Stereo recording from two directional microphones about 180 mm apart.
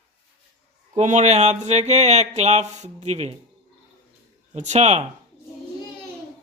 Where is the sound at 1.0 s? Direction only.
40° right (ahead or behind).